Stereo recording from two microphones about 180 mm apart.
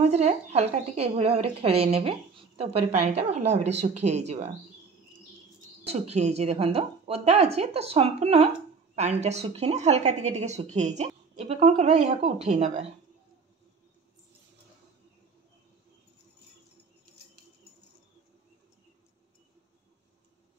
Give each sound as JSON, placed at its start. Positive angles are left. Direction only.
{"t": 0.1, "sound": "speech", "side_deg": -35}
{"t": 5.9, "sound": "speech", "side_deg": -35}